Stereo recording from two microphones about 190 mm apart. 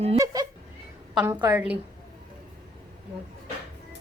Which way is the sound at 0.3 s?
20° right (ahead or behind).